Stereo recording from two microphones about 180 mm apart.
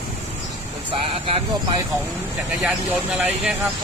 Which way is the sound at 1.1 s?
30° right (ahead or behind).